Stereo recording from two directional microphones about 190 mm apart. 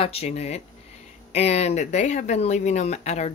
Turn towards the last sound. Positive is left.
turn(degrees=35)  # may be behind; listen again after turning